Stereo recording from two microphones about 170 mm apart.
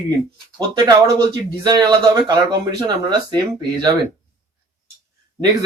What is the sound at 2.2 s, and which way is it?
Speech, 25° right (ahead or behind).